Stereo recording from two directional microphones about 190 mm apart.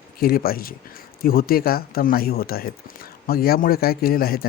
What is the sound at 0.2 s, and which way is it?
Speech, 50° left (ahead or behind).